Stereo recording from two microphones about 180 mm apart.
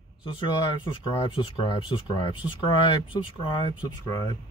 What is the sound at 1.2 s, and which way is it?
Speech, 30° left (ahead or behind).